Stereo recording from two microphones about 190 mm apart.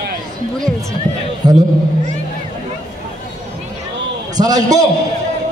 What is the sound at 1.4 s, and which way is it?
Speech, 20° right (ahead or behind).